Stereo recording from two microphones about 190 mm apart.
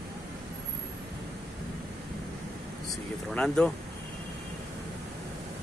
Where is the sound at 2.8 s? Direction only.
5° left (ahead or behind).